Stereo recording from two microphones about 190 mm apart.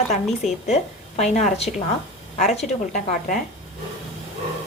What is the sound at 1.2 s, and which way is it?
A woman's voice, 35° left (ahead or behind).